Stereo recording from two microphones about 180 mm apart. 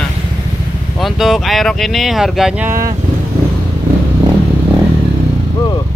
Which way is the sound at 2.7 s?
15° right (ahead or behind).